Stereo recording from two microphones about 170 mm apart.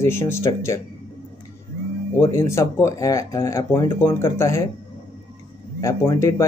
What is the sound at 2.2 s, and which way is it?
Speech, 15° left (ahead or behind).